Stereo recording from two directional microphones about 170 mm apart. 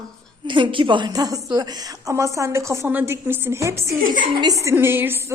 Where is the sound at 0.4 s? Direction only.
30° right (ahead or behind).